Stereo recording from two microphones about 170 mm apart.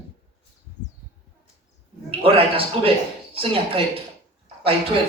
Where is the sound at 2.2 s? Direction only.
35° right (ahead or behind).